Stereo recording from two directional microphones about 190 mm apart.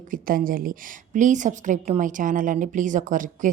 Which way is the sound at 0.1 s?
45° right (ahead or behind).